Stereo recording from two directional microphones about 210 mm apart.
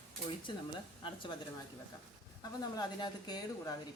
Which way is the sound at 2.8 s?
20° left (ahead or behind).